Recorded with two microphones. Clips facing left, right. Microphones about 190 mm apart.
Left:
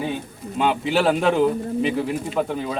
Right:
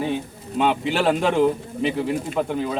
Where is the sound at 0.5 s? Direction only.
Centre (ahead or behind).